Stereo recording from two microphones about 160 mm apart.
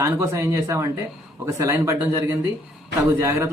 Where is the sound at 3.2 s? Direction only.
20° right (ahead or behind).